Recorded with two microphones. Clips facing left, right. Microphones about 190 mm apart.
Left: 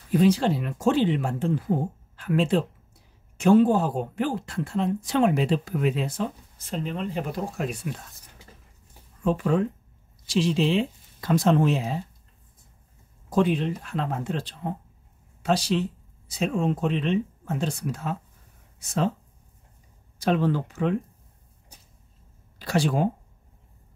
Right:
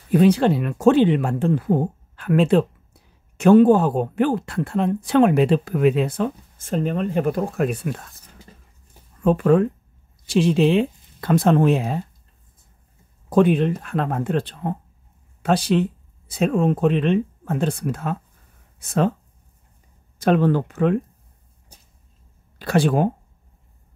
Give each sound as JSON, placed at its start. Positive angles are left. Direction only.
{"t": 0.1, "sound": "speech", "side_deg": -60}
{"t": 9.2, "sound": "speech", "side_deg": -60}
{"t": 13.3, "sound": "speech", "side_deg": -55}
{"t": 20.2, "sound": "speech", "side_deg": -55}
{"t": 22.6, "sound": "speech", "side_deg": -55}